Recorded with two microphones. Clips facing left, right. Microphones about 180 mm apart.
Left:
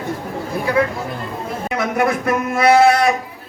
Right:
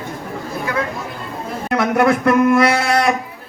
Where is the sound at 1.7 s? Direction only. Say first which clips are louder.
Right 4 dB; 60° right (ahead or behind).